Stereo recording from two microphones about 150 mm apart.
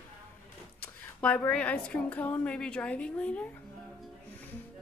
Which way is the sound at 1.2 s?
10° left (ahead or behind).